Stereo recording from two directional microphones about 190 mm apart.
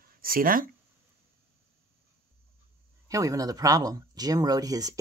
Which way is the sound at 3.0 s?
15° right (ahead or behind).